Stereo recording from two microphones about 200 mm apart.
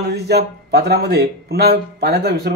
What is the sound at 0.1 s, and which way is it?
Speech, 55° right (ahead or behind).